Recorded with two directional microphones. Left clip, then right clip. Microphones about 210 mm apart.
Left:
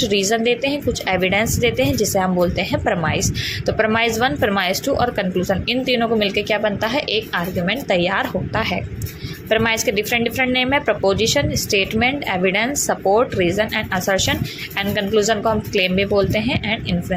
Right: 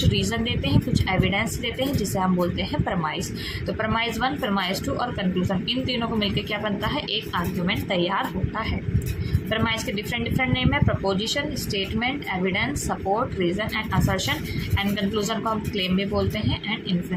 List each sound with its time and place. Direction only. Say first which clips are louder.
0.0 s a woman's voice: left 8 dB; 25° left (ahead or behind)